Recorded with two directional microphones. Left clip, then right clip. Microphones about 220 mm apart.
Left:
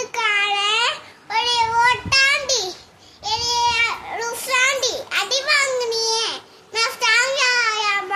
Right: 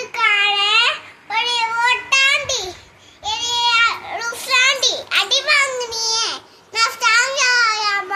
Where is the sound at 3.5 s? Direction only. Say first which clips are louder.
Right 5 dB; 10° left (ahead or behind).